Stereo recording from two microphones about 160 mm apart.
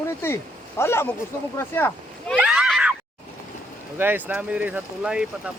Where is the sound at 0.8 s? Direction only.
15° left (ahead or behind).